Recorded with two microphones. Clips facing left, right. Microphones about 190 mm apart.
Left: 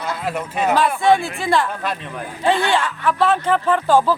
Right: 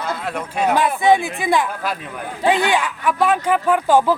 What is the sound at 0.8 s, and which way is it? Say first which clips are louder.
Speech: even; 15° right (ahead or behind).